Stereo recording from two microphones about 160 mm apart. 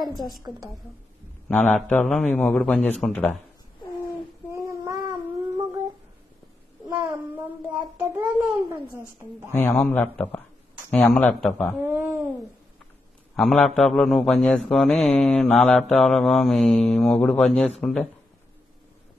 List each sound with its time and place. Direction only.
1.5 s speech: 10° left (ahead or behind)
4.6 s child singing: 20° right (ahead or behind)
6.9 s a sound: 15° right (ahead or behind)
9.0 s speech: 15° left (ahead or behind)
11.7 s a sound: 15° right (ahead or behind)
13.4 s mantra: centre (ahead or behind)